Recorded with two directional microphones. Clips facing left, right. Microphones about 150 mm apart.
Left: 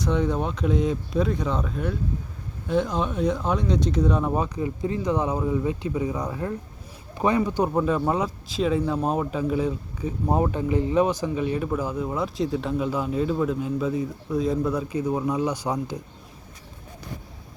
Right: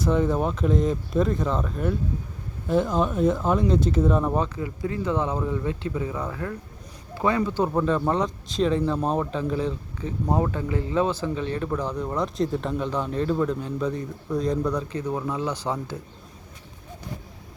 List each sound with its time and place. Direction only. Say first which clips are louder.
0.0 s speech: right 2 dB; 5° right (ahead or behind)
4.4 s speech: left 2 dB; 20° left (ahead or behind)